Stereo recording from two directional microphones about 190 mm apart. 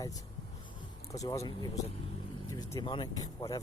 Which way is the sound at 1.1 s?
15° left (ahead or behind).